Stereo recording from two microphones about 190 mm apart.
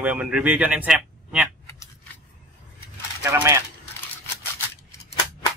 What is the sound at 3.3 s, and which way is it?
Speech, 15° right (ahead or behind).